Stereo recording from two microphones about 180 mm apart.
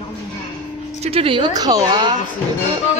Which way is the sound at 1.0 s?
30° right (ahead or behind).